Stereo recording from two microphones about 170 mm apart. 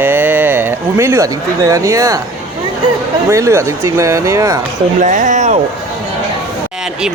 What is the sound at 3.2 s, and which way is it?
Speech, 15° right (ahead or behind).